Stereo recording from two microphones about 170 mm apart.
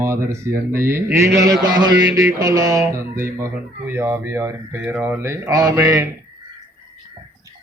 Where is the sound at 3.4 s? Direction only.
10° right (ahead or behind).